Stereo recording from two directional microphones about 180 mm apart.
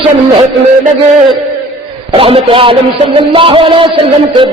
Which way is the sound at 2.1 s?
30° right (ahead or behind).